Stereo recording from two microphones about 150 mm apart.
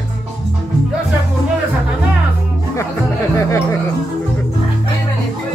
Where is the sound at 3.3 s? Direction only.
20° left (ahead or behind).